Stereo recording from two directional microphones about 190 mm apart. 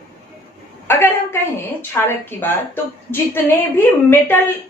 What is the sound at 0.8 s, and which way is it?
A woman's voice, 10° left (ahead or behind).